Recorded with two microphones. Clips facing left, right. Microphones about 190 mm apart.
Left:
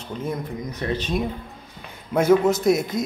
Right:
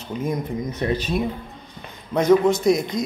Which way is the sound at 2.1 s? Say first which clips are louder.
Right 1 dB; 5° left (ahead or behind).